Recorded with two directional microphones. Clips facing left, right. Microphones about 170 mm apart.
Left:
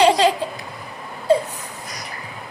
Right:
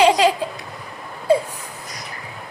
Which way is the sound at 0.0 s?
10° right (ahead or behind).